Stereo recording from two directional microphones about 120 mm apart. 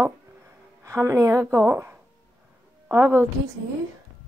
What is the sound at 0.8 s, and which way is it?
A woman's voice, 25° right (ahead or behind).